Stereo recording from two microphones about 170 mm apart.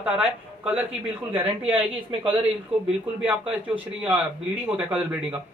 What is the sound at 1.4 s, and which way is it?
Speech, 30° right (ahead or behind).